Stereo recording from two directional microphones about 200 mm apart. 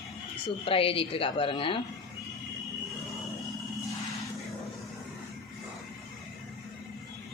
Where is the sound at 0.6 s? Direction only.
30° left (ahead or behind).